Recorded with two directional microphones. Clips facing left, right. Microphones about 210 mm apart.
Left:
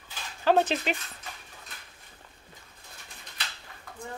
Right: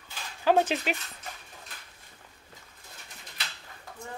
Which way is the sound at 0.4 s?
10° right (ahead or behind).